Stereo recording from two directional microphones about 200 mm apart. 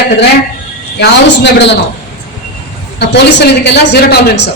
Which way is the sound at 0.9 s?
55° left (ahead or behind).